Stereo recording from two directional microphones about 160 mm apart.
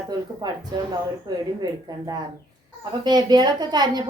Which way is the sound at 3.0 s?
25° right (ahead or behind).